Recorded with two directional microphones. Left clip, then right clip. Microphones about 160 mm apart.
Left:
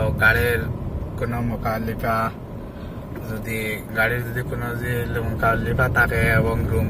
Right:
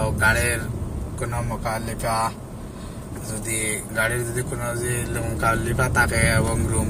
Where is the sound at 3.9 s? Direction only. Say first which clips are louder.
Left 3 dB; 20° left (ahead or behind).